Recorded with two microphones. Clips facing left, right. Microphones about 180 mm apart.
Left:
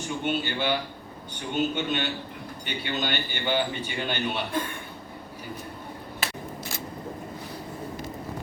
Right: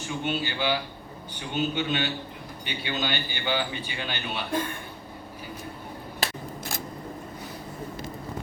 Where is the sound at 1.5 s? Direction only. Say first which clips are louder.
Even; 50° left (ahead or behind).